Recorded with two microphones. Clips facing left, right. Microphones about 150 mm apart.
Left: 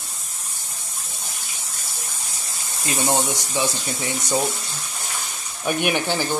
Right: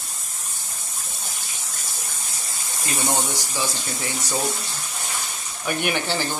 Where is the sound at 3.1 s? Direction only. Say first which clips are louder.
Left 4 dB; 20° left (ahead or behind).